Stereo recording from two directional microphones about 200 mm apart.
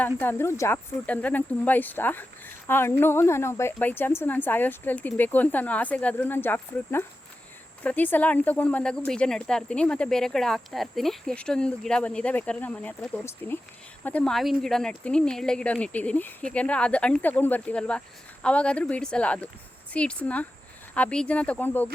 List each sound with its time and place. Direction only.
0.0 s a woman's voice: 10° left (ahead or behind)